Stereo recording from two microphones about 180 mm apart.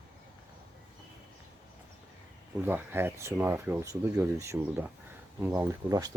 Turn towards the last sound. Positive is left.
turn(degrees=-20)  # may be behind; listen again after turning